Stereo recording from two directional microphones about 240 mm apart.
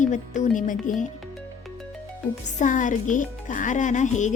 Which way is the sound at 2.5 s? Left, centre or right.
Left.